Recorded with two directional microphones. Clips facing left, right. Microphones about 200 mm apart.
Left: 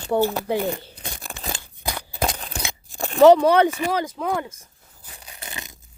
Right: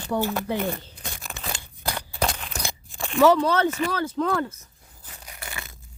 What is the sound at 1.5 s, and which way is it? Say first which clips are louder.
Scissors: left 1 dB; 15° left (ahead or behind).